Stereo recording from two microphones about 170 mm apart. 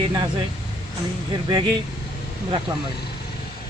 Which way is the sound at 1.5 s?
25° right (ahead or behind).